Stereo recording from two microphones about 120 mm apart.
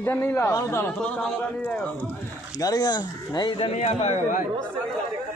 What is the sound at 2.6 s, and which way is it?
Speech, 35° left (ahead or behind).